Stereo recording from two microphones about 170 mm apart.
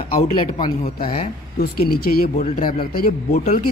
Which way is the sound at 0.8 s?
60° left (ahead or behind).